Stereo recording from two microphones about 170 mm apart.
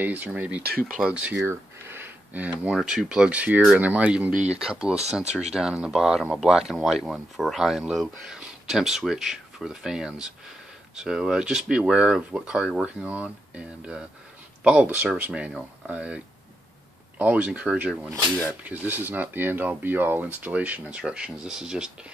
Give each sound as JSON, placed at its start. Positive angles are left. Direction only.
{"t": 0.0, "sound": "speech", "side_deg": -10}
{"t": 0.6, "sound": "speech", "side_deg": -65}
{"t": 0.8, "sound": "speech", "side_deg": -5}
{"t": 4.3, "sound": "speech", "side_deg": -45}
{"t": 4.6, "sound": "speech", "side_deg": -5}
{"t": 17.2, "sound": "speech", "side_deg": -10}